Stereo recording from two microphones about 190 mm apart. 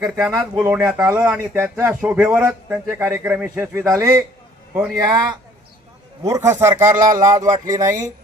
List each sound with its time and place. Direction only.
0.5 s speech: 5° right (ahead or behind)
6.2 s speech: 15° right (ahead or behind)
7.0 s speech: 45° right (ahead or behind)
7.9 s speech: 15° right (ahead or behind)